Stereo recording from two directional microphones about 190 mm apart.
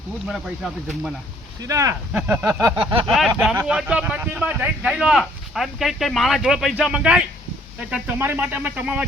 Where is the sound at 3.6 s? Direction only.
5° right (ahead or behind).